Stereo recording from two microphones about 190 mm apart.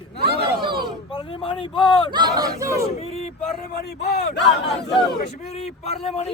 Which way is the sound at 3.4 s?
55° left (ahead or behind).